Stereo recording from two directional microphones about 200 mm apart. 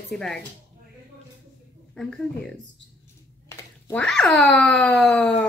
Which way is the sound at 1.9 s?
Centre (ahead or behind).